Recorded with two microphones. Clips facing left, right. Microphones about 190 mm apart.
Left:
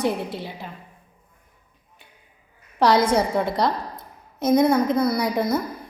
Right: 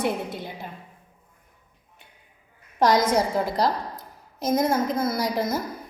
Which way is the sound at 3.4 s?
35° right (ahead or behind).